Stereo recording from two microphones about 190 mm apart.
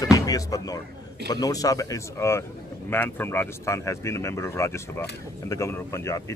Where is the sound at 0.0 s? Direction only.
20° left (ahead or behind).